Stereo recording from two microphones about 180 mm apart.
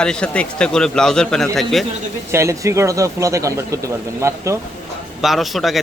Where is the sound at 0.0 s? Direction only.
5° left (ahead or behind).